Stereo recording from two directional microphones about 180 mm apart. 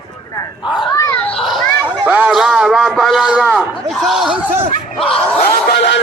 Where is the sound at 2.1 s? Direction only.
5° right (ahead or behind).